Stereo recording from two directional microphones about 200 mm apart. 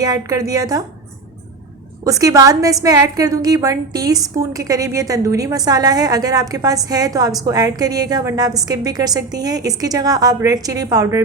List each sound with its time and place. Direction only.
0.0 s a woman's voice: 20° right (ahead or behind)
2.0 s a woman's voice: 15° right (ahead or behind)